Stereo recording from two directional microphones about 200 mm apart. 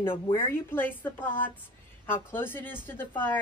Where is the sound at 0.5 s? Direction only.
10° left (ahead or behind).